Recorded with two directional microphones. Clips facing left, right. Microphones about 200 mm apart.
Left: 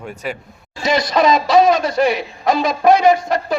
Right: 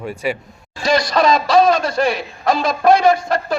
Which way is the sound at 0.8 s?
20° left (ahead or behind).